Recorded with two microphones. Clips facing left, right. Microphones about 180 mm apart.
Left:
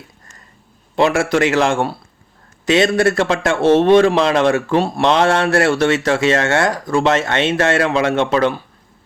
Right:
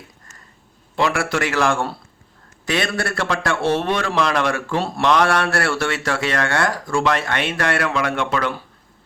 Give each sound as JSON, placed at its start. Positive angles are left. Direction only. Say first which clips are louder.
{"t": 0.9, "sound": "a man's voice", "louder": "left 6 dB", "side_deg": 20}